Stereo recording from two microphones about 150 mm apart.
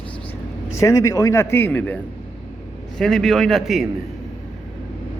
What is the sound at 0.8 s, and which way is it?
Speech, 20° left (ahead or behind).